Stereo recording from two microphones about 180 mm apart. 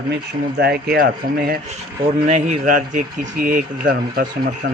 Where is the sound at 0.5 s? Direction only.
60° right (ahead or behind).